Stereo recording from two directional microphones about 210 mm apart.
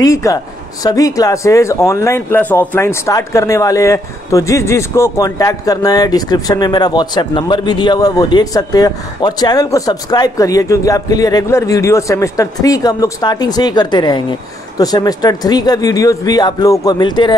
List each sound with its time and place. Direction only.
0.0 s speech: 15° left (ahead or behind)